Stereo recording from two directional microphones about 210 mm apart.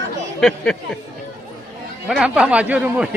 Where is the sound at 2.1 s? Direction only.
5° right (ahead or behind).